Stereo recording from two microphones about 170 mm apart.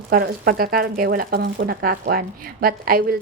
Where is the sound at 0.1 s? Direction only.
60° right (ahead or behind).